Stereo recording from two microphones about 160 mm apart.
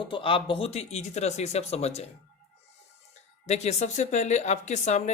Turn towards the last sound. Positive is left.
turn(degrees=45)  # may be behind; listen again after turning